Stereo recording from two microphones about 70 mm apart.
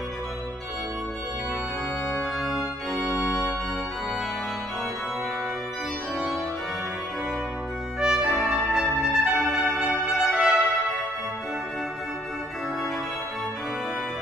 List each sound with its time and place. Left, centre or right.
2.4 s organ: centre
3.0 s organ: left
8.0 s brass instrument: centre
8.5 s music: centre
9.8 s trumpet: centre